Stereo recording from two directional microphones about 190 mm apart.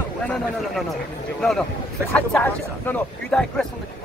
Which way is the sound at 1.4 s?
5° left (ahead or behind).